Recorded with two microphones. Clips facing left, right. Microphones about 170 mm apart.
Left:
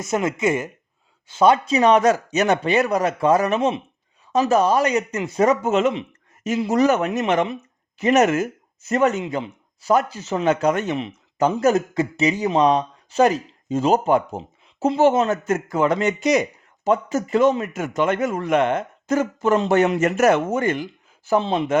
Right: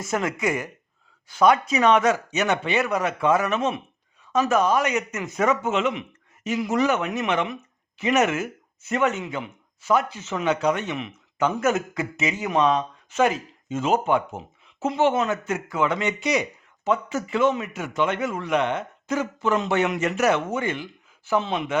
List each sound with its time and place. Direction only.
0.0 s speech: 20° left (ahead or behind); by 10.9 s 45° left (ahead or behind)
10.9 s speech: 35° left (ahead or behind)
21.2 s speech: 35° left (ahead or behind)